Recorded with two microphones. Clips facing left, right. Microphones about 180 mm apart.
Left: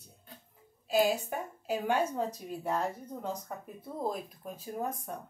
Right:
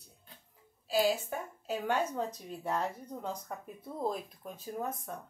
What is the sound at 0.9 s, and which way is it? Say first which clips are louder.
A woman's voice: left 2 dB; 15° left (ahead or behind).